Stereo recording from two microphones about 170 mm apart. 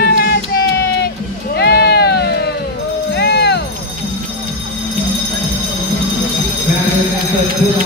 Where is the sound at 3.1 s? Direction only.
80° left.